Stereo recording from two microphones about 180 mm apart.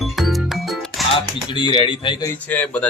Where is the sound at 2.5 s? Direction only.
10° left (ahead or behind).